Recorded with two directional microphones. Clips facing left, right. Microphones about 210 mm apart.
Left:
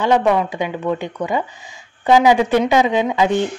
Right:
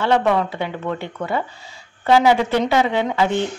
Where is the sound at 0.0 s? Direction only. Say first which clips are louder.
Left 2 dB; 15° left (ahead or behind).